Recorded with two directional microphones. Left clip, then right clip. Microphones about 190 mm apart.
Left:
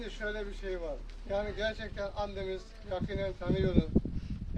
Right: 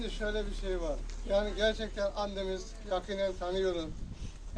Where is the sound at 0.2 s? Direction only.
10° left (ahead or behind).